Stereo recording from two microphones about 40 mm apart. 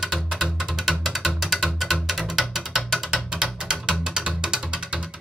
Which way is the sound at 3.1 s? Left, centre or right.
Centre.